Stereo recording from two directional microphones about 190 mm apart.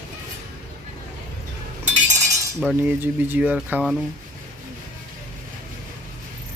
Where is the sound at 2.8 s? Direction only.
10° right (ahead or behind).